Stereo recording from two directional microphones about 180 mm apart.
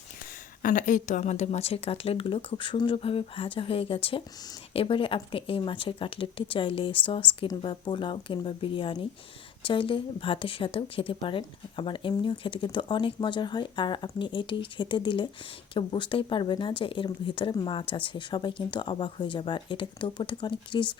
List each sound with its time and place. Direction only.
0.6 s a woman's voice: 45° left (ahead or behind); by 20.9 s 25° left (ahead or behind)